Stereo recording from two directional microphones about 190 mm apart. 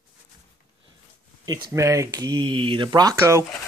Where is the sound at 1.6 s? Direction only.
15° right (ahead or behind).